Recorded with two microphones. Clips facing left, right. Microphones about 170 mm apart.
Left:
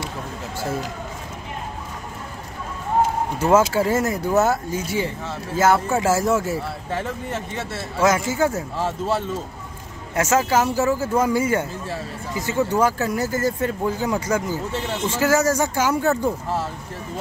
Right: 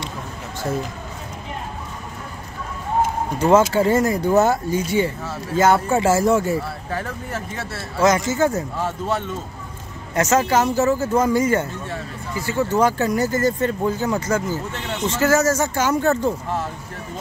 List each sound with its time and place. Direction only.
3.3 s speech: 5° left (ahead or behind)
10.1 s speech: 5° left (ahead or behind)
12.8 s speech: 5° left (ahead or behind)